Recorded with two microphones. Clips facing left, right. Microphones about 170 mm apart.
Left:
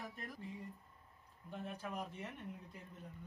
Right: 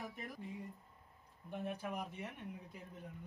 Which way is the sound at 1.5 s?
10° right (ahead or behind).